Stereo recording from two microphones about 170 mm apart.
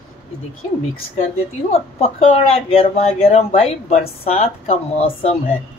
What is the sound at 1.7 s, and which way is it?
Speech, 40° left (ahead or behind).